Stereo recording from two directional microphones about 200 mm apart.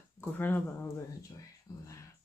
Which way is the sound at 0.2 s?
10° left (ahead or behind).